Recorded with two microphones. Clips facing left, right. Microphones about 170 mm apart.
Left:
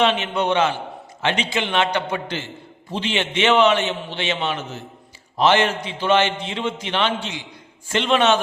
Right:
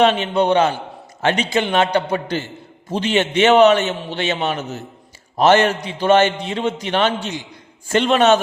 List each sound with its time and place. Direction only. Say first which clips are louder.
0.0 s a man's voice: right 4 dB; 35° right (ahead or behind)